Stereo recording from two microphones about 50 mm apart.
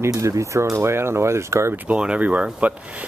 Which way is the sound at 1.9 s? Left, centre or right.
Right.